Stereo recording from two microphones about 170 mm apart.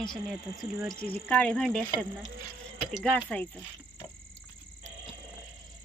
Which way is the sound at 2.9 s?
5° left (ahead or behind).